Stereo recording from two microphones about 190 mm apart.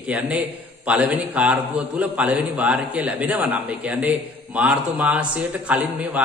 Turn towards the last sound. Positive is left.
turn(degrees=-10)  # may be behind; listen again after turning